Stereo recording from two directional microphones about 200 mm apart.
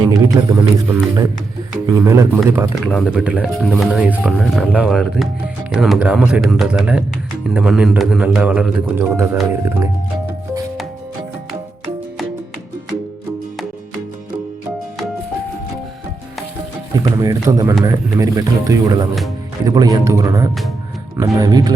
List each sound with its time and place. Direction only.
0.1 s speech: 15° right (ahead or behind)
2.8 s speech: centre (ahead or behind)
16.9 s speech: 20° right (ahead or behind)